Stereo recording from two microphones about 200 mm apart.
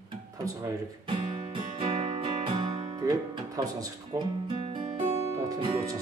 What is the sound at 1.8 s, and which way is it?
Music, 30° right (ahead or behind).